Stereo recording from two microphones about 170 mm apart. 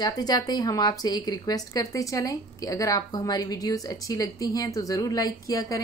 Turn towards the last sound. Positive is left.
turn(degrees=20)  # may be behind; listen again after turning